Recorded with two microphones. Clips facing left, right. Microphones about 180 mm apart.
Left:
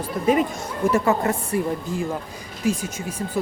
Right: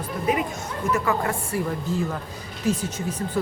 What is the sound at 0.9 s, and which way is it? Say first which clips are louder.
Speech: left 4 dB; 25° left (ahead or behind).